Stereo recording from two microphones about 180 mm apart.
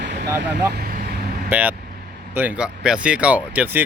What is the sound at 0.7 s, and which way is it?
Vehicle, 55° right (ahead or behind).